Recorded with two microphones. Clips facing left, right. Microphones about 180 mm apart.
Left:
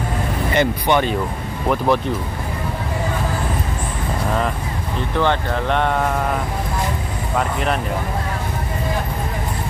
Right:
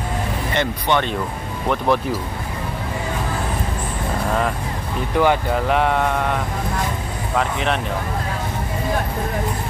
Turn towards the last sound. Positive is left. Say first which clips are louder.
# even
turn(degrees=0)  # may be behind; listen again after turning